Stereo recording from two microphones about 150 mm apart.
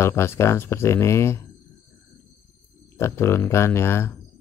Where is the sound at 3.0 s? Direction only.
15° left (ahead or behind).